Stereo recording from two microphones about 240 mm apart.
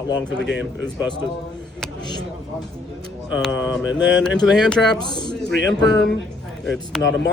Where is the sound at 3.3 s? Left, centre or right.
Centre.